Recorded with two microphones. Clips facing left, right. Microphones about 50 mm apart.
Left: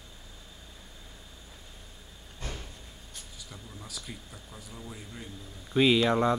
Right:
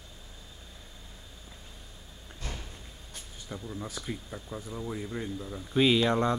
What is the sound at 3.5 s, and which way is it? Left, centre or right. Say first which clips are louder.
Speech: right 8 dB; right.